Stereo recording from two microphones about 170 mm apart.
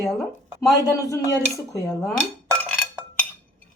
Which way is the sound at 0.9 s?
20° left (ahead or behind).